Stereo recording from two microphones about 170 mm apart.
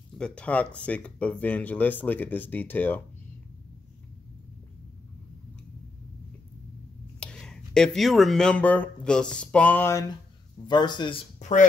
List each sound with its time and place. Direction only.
0.2 s speech: 5° left (ahead or behind)
7.2 s speech: 5° left (ahead or behind); by 11.1 s 25° left (ahead or behind)
11.3 s speech: 45° left (ahead or behind)